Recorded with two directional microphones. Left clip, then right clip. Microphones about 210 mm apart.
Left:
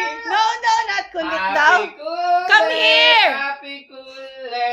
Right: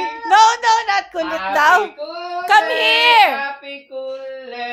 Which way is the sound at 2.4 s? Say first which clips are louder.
Right 3 dB; 20° right (ahead or behind).